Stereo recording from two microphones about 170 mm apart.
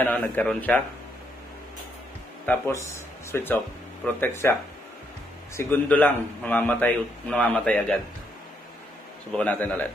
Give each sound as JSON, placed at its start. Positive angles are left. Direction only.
{"t": 0.0, "sound": "a man's voice", "side_deg": 10}
{"t": 2.4, "sound": "a man's voice", "side_deg": 15}
{"t": 5.6, "sound": "a man's voice", "side_deg": 10}
{"t": 9.3, "sound": "a man's voice", "side_deg": 10}